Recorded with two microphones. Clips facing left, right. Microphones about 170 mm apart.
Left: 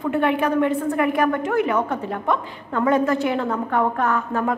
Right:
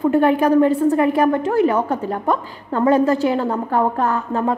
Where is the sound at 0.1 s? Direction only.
40° right (ahead or behind).